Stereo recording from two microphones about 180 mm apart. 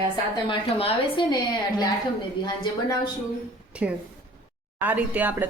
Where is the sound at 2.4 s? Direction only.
25° left (ahead or behind).